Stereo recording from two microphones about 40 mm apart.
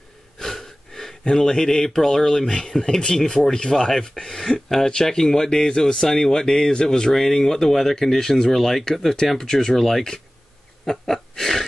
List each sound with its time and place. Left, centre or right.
0.4 s gasp: centre
1.2 s speech: centre
4.2 s a sound: centre
4.6 s speech: centre
6.0 s speech: centre
10.9 s wheeze: centre